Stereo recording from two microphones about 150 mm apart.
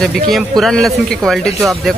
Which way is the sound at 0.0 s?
Centre (ahead or behind).